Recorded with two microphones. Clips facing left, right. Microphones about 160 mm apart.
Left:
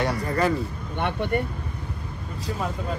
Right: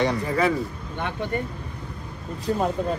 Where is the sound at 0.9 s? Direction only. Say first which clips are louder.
Left 3 dB; 60° left (ahead or behind).